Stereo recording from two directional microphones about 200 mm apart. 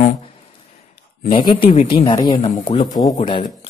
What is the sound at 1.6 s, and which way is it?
Speech, 25° left (ahead or behind).